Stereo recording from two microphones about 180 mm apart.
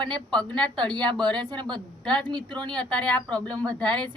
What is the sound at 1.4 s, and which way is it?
Speech, 25° right (ahead or behind).